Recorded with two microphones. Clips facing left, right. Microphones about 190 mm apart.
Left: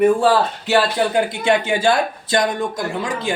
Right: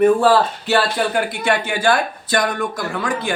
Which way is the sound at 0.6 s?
20° left (ahead or behind).